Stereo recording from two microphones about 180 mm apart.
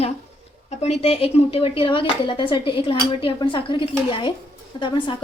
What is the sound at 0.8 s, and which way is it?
A woman's voice, 35° left (ahead or behind).